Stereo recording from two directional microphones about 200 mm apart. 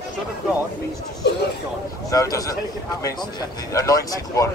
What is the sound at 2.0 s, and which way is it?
Speech, 15° left (ahead or behind).